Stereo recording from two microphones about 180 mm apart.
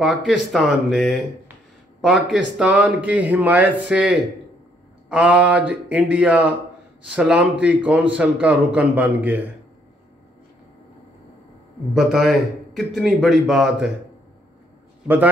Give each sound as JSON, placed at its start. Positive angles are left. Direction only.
{"t": 0.0, "sound": "a man's voice", "side_deg": 0}
{"t": 11.9, "sound": "a man's voice", "side_deg": 0}